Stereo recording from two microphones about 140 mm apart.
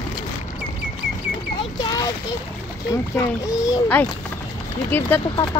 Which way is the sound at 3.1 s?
25° left (ahead or behind).